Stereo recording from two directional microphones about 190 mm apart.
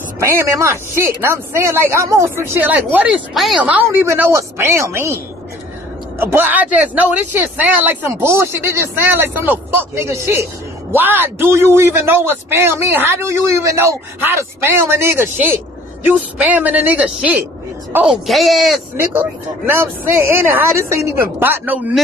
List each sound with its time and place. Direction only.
0.2 s a man's voice: 15° right (ahead or behind)